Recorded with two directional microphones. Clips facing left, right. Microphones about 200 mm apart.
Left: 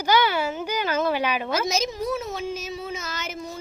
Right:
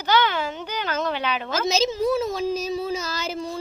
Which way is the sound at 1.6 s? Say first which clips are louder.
Right 4 dB; 30° right (ahead or behind).